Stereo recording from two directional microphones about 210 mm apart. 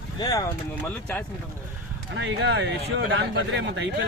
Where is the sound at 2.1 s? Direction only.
60° right (ahead or behind).